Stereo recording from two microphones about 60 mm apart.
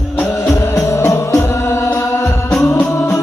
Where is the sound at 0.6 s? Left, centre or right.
Left.